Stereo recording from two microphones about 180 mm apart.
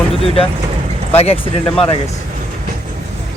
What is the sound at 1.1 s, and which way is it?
Speech, 35° left (ahead or behind).